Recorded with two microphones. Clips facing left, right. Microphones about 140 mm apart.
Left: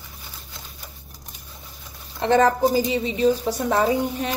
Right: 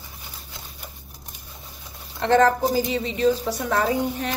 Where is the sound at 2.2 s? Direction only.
15° left (ahead or behind).